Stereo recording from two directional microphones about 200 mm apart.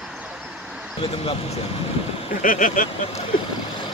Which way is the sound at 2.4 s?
40° left (ahead or behind).